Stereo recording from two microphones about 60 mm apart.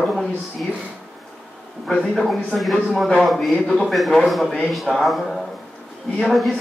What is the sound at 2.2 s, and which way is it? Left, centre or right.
A man's voice, centre.